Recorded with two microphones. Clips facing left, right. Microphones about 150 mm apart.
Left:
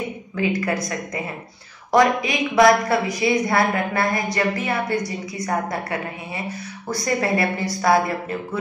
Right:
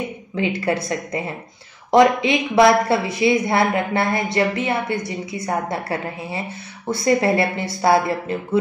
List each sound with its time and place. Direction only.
0.4 s a woman's voice: 30° right (ahead or behind)